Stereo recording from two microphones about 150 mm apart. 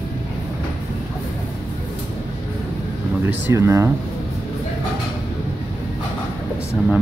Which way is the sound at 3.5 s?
20° right (ahead or behind).